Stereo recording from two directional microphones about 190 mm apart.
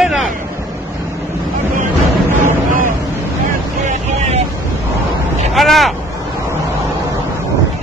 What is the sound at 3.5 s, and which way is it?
Boat, 40° right (ahead or behind).